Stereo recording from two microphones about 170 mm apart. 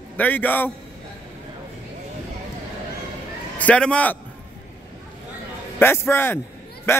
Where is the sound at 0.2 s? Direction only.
10° left (ahead or behind).